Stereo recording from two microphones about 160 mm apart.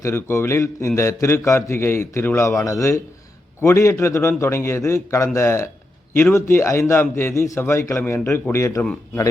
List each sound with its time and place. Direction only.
0.0 s a man's voice: 15° left (ahead or behind)